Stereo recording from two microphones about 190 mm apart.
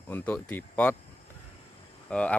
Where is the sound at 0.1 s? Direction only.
10° left (ahead or behind).